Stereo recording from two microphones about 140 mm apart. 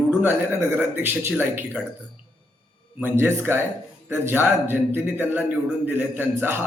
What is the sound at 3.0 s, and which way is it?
A man's voice, 15° right (ahead or behind).